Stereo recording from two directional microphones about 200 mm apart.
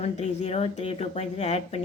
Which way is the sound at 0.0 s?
35° left (ahead or behind).